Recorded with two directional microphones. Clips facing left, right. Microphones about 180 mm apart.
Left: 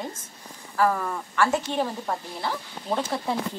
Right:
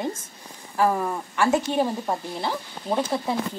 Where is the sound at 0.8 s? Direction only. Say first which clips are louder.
Right 1 dB; 20° right (ahead or behind).